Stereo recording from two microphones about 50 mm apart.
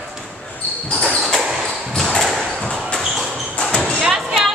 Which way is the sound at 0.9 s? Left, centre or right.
Centre.